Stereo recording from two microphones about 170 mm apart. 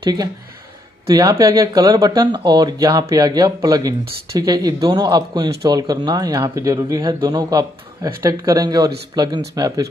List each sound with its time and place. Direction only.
1.0 s speech: 15° right (ahead or behind)